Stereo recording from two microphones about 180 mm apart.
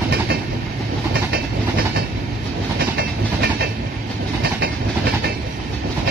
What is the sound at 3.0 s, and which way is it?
Train, 60° right (ahead or behind).